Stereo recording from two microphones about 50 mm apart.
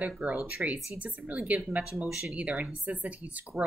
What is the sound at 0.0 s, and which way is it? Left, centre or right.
A woman's voice, right.